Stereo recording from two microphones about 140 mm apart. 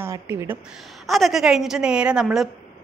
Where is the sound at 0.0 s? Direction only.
20° right (ahead or behind).